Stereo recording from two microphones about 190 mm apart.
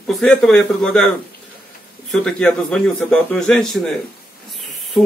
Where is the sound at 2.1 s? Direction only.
5° left (ahead or behind).